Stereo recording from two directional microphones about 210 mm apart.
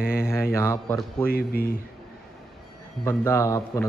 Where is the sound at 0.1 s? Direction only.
10° left (ahead or behind).